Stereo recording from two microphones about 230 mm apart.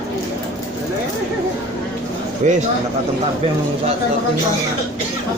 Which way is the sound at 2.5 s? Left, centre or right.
Right.